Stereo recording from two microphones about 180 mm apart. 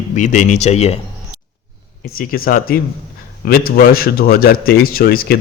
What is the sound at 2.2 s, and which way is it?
A man's voice, 50° left (ahead or behind).